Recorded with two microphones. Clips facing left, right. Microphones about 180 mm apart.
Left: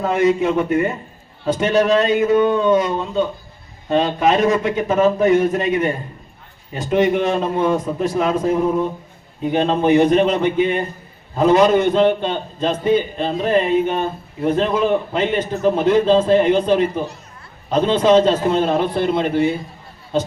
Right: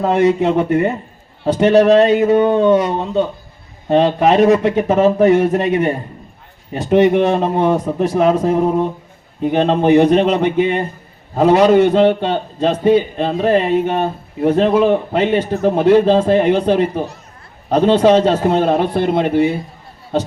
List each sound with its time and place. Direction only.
0.0 s a man's voice: 65° right (ahead or behind)
6.7 s a man's voice: 65° right (ahead or behind)
9.5 s a man's voice: 65° right (ahead or behind)